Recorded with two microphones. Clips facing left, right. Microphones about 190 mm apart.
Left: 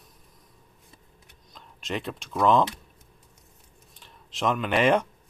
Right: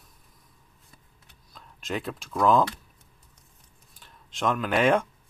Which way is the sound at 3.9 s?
Centre (ahead or behind).